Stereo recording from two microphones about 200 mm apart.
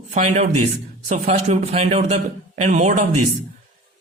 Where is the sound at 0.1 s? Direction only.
35° right (ahead or behind).